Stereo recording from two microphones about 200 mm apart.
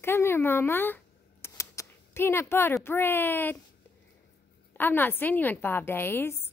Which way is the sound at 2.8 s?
10° left (ahead or behind).